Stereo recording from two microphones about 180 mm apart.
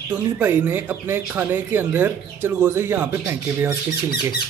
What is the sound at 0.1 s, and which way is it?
Speech, 10° right (ahead or behind).